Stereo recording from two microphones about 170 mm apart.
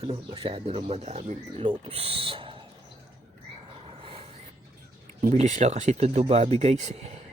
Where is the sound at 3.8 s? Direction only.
35° right (ahead or behind).